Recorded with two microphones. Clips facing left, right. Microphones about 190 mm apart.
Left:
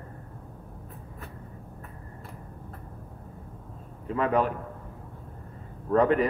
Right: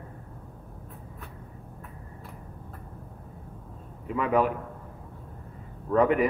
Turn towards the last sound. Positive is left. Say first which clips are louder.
# even
turn(degrees=-10)  # may be behind; listen again after turning